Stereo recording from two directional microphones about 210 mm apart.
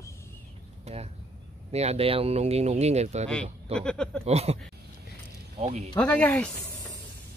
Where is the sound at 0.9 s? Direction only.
30° right (ahead or behind).